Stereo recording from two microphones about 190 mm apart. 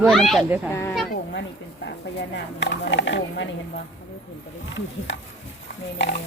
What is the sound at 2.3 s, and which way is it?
Speech, 65° left (ahead or behind).